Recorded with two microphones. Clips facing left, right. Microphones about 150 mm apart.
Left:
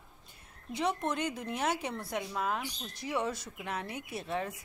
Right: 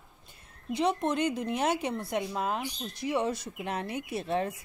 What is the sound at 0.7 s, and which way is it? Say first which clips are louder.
Speech: right 5 dB; 20° right (ahead or behind).